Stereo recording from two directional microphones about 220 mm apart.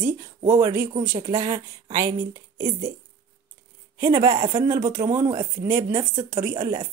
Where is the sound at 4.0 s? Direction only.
15° right (ahead or behind).